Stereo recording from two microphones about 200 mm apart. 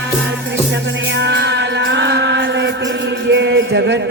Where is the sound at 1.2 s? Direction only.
60° right (ahead or behind).